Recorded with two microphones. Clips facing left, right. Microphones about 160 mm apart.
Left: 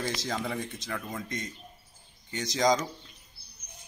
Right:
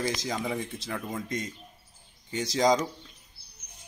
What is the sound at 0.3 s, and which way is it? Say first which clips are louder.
Speech: right 1 dB; 10° right (ahead or behind).